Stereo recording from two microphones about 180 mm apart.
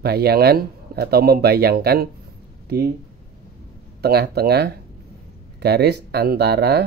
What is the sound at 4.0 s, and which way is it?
Speech, 65° right (ahead or behind).